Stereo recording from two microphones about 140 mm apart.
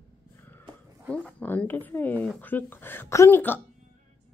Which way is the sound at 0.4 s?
15° left (ahead or behind).